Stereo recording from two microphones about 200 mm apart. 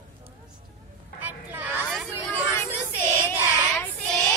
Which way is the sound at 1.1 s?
10° right (ahead or behind).